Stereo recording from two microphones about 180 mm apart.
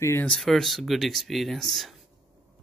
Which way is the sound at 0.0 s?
10° left (ahead or behind).